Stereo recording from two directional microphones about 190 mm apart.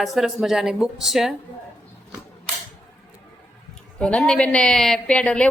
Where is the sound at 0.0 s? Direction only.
Centre (ahead or behind).